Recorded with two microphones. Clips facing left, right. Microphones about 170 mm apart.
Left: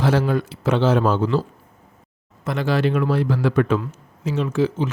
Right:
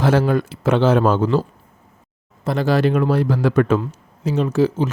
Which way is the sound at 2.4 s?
35° right (ahead or behind).